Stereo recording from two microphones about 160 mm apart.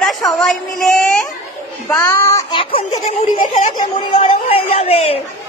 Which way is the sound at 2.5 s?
35° left (ahead or behind).